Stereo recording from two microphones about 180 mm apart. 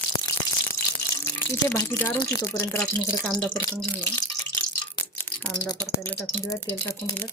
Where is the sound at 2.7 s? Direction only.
10° left (ahead or behind).